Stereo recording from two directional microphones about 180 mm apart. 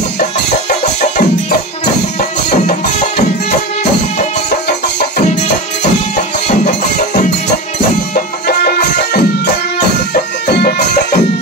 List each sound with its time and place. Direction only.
6.4 s music: 40° left (ahead or behind)
8.1 s music: 60° left (ahead or behind)